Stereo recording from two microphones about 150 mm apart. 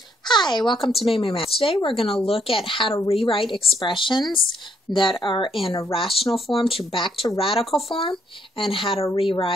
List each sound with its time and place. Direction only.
0.3 s speech: 30° left (ahead or behind)
6.1 s speech: centre (ahead or behind)
6.5 s speech: 40° left (ahead or behind)